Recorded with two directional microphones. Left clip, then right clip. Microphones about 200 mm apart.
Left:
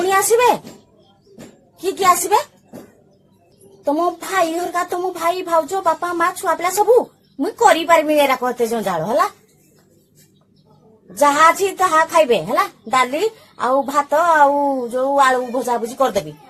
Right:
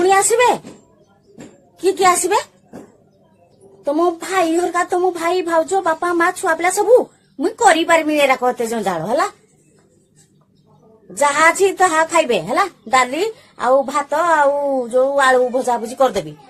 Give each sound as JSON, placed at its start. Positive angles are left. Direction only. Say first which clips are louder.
{"t": 0.0, "sound": "a sound", "louder": "right 1 dB", "side_deg": -20}
{"t": 1.8, "sound": "a woman's voice", "louder": "right 1 dB", "side_deg": -20}
{"t": 3.8, "sound": "a woman's voice", "louder": "right 1 dB", "side_deg": -20}
{"t": 11.2, "sound": "a woman's voice", "louder": "left 1 dB", "side_deg": -20}